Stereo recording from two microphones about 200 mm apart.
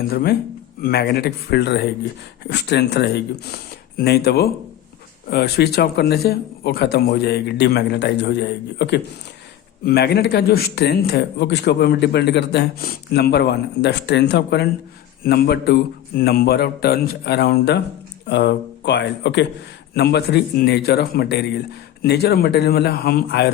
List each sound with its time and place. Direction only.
0.1 s a man's voice: 45° left (ahead or behind)